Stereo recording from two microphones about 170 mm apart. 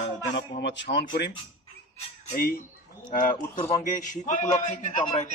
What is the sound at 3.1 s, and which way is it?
A man's voice, 50° left (ahead or behind).